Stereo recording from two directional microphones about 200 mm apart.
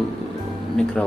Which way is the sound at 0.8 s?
5° left (ahead or behind).